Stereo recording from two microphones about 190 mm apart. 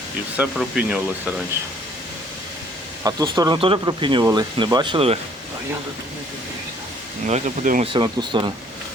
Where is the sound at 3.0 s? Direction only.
20° right (ahead or behind).